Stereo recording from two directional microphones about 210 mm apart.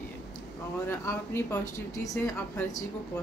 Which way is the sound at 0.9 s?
15° left (ahead or behind).